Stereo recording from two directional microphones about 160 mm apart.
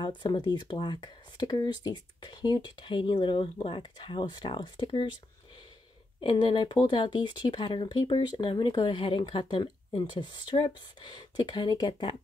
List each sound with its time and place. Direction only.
0.0 s speech: 30° left (ahead or behind)
6.2 s speech: 30° left (ahead or behind)